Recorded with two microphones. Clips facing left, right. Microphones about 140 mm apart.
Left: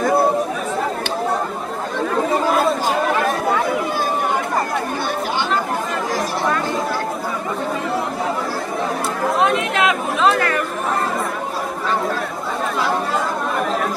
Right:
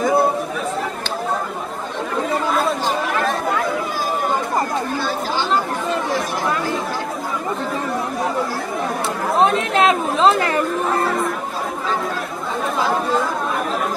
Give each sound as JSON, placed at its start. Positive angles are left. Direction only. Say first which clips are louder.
{"t": 9.4, "sound": "chatter", "louder": "right 3 dB", "side_deg": -35}